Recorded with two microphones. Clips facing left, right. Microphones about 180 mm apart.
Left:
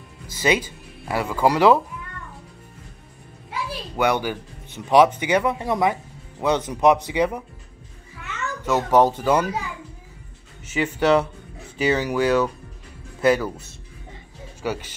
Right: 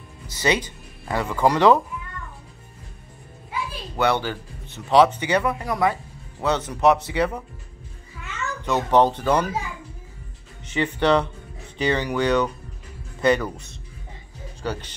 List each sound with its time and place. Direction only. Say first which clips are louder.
0.4 s speech: left 1 dB; 10° left (ahead or behind)
3.9 s speech: even; 10° left (ahead or behind)
5.5 s speech: left 1 dB; 25° left (ahead or behind)
8.6 s speech: left 1 dB; 5° left (ahead or behind)
10.7 s speech: left 1 dB; 5° left (ahead or behind)